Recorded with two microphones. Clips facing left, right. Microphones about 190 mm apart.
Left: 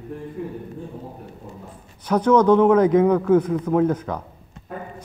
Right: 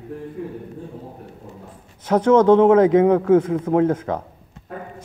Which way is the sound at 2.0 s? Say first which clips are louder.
Right 2 dB; 25° right (ahead or behind).